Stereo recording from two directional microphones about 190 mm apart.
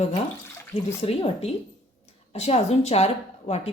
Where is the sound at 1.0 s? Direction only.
30° left (ahead or behind).